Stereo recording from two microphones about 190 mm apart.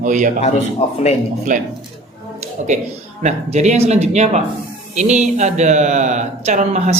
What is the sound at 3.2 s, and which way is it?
Speech, 35° right (ahead or behind).